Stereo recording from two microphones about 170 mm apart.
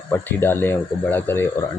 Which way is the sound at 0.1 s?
15° left (ahead or behind).